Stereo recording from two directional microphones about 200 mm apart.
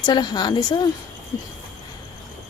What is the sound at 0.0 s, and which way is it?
Speech, 20° left (ahead or behind).